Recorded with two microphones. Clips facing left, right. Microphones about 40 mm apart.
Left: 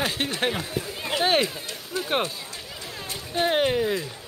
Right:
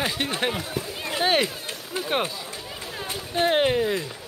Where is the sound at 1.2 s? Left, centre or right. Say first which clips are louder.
Even; centre.